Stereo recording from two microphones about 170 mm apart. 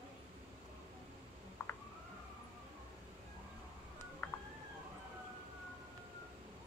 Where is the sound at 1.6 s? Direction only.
15° left (ahead or behind).